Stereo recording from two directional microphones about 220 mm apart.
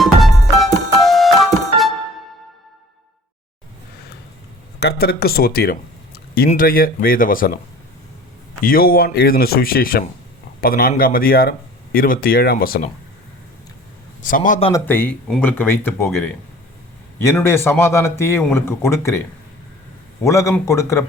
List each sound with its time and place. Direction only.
0.0 s music: centre (ahead or behind)
4.8 s speech: 45° left (ahead or behind)
8.6 s speech: 40° left (ahead or behind)
14.2 s speech: 35° left (ahead or behind)
14.7 s a man's voice: 10° left (ahead or behind)
20.2 s a man's voice: 15° left (ahead or behind)